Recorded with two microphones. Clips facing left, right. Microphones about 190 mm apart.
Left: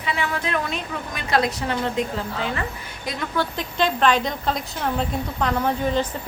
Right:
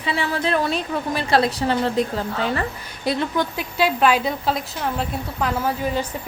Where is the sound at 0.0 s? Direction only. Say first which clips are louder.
Right 3 dB; 30° right (ahead or behind).